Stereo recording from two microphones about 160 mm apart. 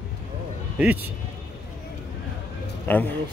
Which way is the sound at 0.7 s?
10° right (ahead or behind).